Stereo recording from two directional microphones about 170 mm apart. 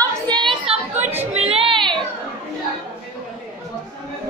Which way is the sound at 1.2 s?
35° right (ahead or behind).